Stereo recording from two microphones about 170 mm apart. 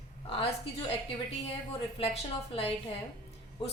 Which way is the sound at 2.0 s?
35° left (ahead or behind).